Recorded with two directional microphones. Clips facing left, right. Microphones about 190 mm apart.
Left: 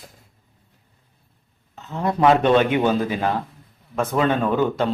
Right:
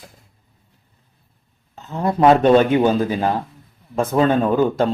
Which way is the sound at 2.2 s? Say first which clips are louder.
Right 4 dB; 40° right (ahead or behind).